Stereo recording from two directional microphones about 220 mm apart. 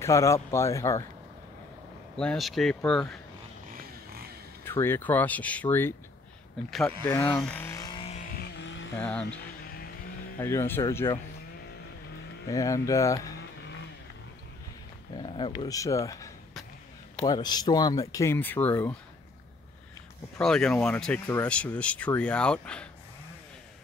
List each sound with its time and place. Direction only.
0.0 s speech: 15° left (ahead or behind)
2.1 s speech: centre (ahead or behind)
4.6 s speech: 10° left (ahead or behind)
8.4 s vehicle: 55° left (ahead or behind)
8.9 s speech: 5° left (ahead or behind)
10.4 s speech: 10° left (ahead or behind)
12.4 s speech: 15° left (ahead or behind)
15.1 s speech: 20° left (ahead or behind)
20.3 s speech: centre (ahead or behind)